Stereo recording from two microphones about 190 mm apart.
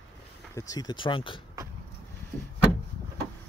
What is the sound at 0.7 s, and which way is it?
Speech, 20° left (ahead or behind).